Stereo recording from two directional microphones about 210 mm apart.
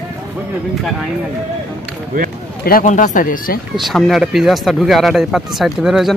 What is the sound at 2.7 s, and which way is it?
Speech, 40° left (ahead or behind).